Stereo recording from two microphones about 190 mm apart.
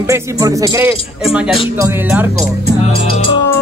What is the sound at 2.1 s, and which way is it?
Music, 10° right (ahead or behind).